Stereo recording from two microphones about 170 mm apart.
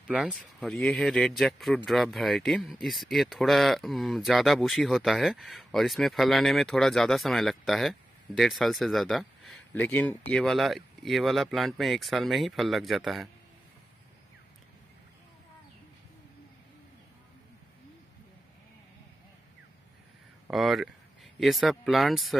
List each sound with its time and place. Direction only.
0.1 s speech: centre (ahead or behind)
20.4 s speech: centre (ahead or behind)